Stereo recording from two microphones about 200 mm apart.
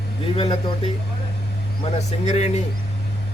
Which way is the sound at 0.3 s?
25° left (ahead or behind).